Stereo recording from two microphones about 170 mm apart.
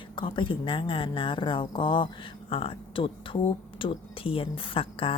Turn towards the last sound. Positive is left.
turn(degrees=30)  # may be behind; listen again after turning